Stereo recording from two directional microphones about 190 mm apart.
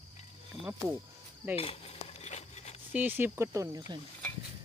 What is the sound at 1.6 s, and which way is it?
Cutlery, 30° left (ahead or behind).